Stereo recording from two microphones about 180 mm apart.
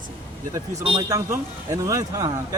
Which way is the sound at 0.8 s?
25° right (ahead or behind).